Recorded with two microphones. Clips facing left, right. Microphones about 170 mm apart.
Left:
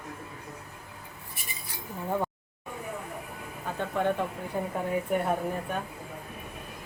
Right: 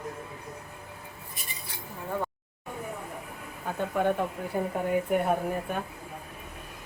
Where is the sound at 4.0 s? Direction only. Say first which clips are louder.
Right 1 dB; 10° right (ahead or behind).